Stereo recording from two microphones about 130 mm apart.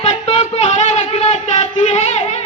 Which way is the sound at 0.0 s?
55° left (ahead or behind).